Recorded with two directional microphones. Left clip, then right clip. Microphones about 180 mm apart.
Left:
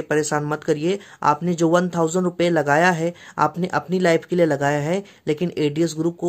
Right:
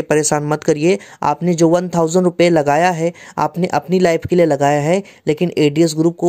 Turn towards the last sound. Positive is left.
turn(degrees=-35)  # may be behind; listen again after turning